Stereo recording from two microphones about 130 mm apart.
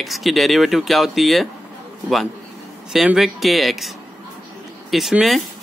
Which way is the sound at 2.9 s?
5° right (ahead or behind).